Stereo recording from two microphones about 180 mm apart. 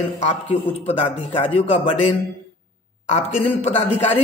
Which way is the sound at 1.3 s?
30° left (ahead or behind).